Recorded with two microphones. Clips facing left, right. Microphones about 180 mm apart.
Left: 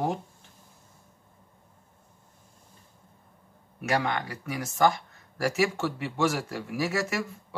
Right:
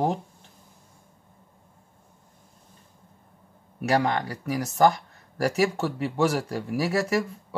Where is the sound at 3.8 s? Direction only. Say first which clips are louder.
Right 4 dB; 35° right (ahead or behind).